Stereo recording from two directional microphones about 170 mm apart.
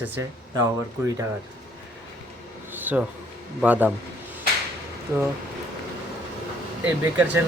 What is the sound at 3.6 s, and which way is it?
Speech, 10° right (ahead or behind).